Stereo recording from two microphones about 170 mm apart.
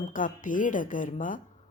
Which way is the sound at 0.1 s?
50° left (ahead or behind).